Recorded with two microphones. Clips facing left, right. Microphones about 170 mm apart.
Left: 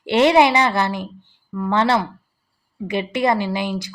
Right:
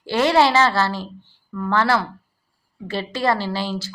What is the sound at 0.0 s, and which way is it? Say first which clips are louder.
A woman's voice: left 3 dB; 20° left (ahead or behind).